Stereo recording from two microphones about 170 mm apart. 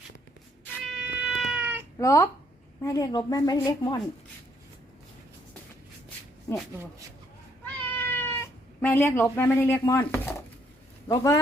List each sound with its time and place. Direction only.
0.8 s cat: centre (ahead or behind)
2.0 s a woman's voice: 20° left (ahead or behind)
6.5 s speech: 15° left (ahead or behind)
7.6 s cat: 10° left (ahead or behind)
9.8 s a woman's voice: 15° left (ahead or behind)